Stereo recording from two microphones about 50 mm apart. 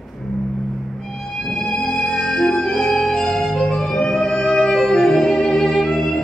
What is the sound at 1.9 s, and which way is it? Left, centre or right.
Music, centre.